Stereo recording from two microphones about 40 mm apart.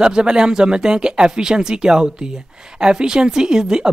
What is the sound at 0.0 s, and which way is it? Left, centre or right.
Speech, right.